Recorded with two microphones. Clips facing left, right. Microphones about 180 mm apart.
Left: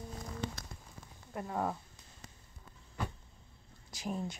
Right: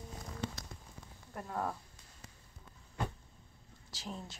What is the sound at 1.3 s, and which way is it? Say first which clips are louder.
Speech: left 3 dB; 10° left (ahead or behind).